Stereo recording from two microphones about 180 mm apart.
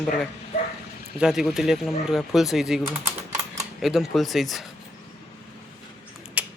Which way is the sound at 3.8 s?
Centre (ahead or behind).